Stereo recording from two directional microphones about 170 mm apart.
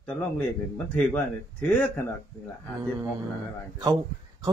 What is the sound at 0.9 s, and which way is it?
Speech, 5° left (ahead or behind).